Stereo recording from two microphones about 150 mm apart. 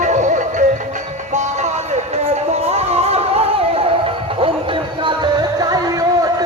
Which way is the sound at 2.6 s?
45° right (ahead or behind).